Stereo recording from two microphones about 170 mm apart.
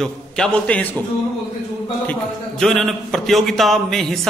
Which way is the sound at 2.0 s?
5° left (ahead or behind).